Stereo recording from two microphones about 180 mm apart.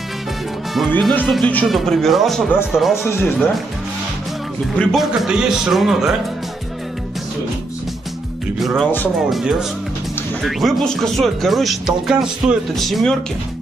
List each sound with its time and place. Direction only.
0.9 s speech: 10° left (ahead or behind)
3.0 s speech: 15° left (ahead or behind)
4.7 s speech: centre (ahead or behind)
8.5 s speech: centre (ahead or behind)